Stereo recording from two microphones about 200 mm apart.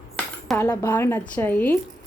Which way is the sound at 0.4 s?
10° left (ahead or behind).